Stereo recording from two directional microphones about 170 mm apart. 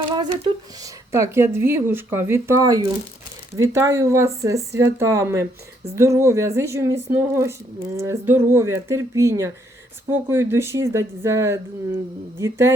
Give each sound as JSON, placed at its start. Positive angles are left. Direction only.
{"t": 0.8, "sound": "speech", "side_deg": -15}